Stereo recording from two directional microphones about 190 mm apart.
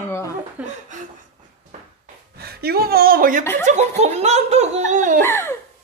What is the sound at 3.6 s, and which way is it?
Speech, 35° right (ahead or behind).